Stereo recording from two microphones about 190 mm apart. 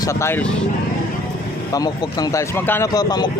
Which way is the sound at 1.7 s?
20° left (ahead or behind).